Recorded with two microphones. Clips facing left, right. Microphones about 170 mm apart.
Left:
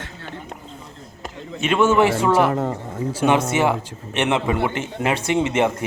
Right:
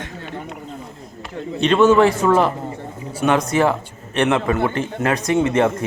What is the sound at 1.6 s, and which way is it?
Speech, 10° left (ahead or behind).